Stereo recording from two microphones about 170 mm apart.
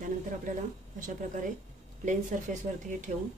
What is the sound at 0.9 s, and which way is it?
Speech, 50° right (ahead or behind).